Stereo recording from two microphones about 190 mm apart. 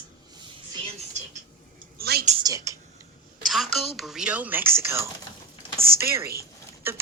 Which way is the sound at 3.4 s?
Centre (ahead or behind).